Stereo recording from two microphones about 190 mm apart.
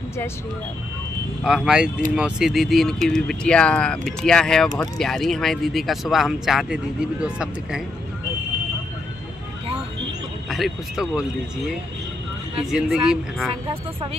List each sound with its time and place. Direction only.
1.4 s speech: 5° right (ahead or behind)
10.5 s speech: centre (ahead or behind)
12.7 s speech: 5° right (ahead or behind)